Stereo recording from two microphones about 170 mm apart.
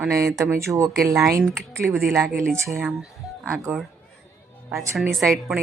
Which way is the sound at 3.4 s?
15° right (ahead or behind).